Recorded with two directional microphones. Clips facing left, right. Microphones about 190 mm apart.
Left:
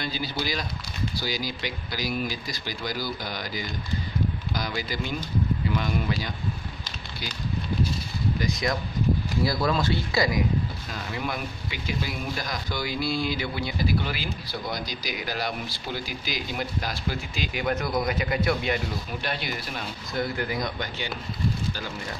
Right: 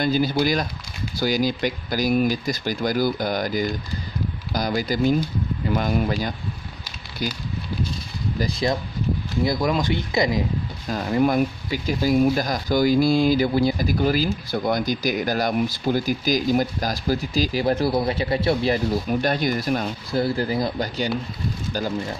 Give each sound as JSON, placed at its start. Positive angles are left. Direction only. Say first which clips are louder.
{"t": 0.0, "sound": "speech", "louder": "right 10 dB", "side_deg": -50}
{"t": 8.4, "sound": "speech", "louder": "right 6 dB", "side_deg": -30}
{"t": 9.4, "sound": "speech", "louder": "right 5 dB", "side_deg": -20}
{"t": 10.9, "sound": "speech", "louder": "right 11 dB", "side_deg": -45}
{"t": 19.0, "sound": "speech", "louder": "right 10 dB", "side_deg": -45}